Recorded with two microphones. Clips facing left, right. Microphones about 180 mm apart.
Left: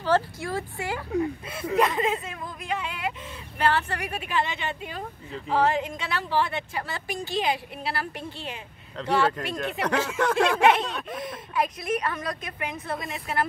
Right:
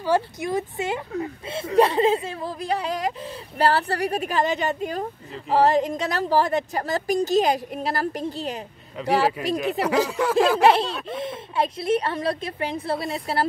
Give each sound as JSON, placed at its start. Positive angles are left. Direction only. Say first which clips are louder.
{"t": 0.0, "sound": "speech", "louder": "right 2 dB", "side_deg": -15}
{"t": 8.9, "sound": "speech", "louder": "right 3 dB", "side_deg": -10}
{"t": 9.2, "sound": "speech", "louder": "right 3 dB", "side_deg": -35}
{"t": 9.8, "sound": "speech", "louder": "right 1 dB", "side_deg": -10}
{"t": 10.6, "sound": "speech", "louder": "right 3 dB", "side_deg": -30}